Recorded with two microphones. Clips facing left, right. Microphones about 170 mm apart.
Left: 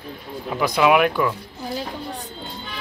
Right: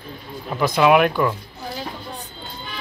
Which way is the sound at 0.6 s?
5° left (ahead or behind).